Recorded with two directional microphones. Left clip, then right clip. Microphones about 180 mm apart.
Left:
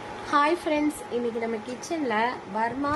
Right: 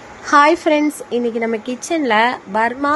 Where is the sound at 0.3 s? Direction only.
45° right (ahead or behind).